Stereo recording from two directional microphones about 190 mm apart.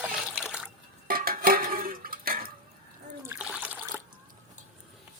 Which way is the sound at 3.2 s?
5° right (ahead or behind).